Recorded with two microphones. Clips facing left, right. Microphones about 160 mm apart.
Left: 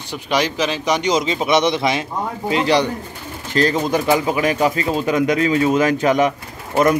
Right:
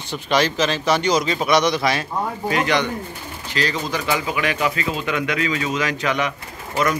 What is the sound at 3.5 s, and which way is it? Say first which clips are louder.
Speech: left 7 dB; 50° left (ahead or behind).